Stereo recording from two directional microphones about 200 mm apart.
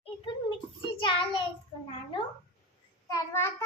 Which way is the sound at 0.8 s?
25° left (ahead or behind).